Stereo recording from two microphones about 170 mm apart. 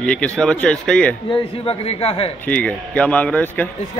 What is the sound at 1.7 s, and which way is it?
Speech, 35° left (ahead or behind).